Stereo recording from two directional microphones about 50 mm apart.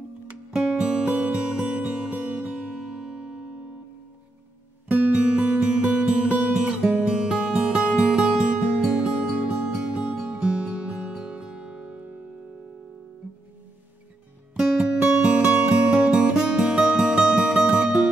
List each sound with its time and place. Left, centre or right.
0.5 s music: centre
4.8 s music: right
14.6 s music: right